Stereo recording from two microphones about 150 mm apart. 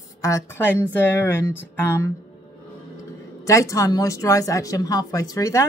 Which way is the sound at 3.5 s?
20° left (ahead or behind).